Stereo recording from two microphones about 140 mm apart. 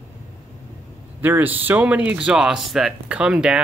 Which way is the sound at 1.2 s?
15° right (ahead or behind).